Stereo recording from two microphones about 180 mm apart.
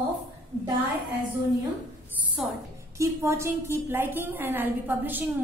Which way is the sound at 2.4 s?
Centre (ahead or behind).